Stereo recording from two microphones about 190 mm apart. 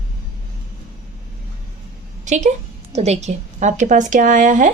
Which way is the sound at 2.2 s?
40° right (ahead or behind).